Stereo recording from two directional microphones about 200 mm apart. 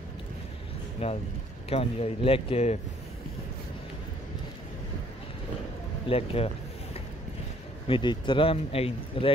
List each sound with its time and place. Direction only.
1.0 s speech: 30° left (ahead or behind)
6.0 s a sound: 30° left (ahead or behind)
7.9 s speech: 25° left (ahead or behind)